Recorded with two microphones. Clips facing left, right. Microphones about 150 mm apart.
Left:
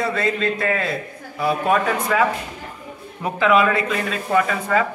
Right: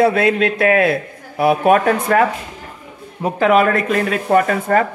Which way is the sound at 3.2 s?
45° right (ahead or behind).